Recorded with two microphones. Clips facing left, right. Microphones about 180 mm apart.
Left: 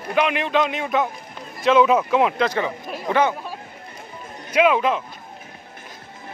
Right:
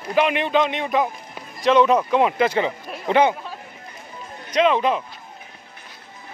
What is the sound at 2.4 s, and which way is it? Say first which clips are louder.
Speech: right 2 dB; 20° right (ahead or behind).